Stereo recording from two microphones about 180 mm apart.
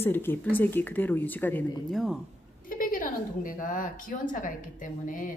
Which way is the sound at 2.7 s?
50° left (ahead or behind).